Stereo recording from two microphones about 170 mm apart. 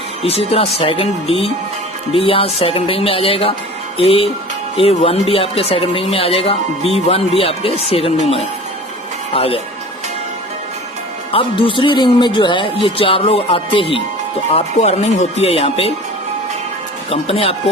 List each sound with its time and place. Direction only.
0.2 s speech: 35° left (ahead or behind)
11.3 s speech: 30° left (ahead or behind)
17.1 s speech: 35° left (ahead or behind)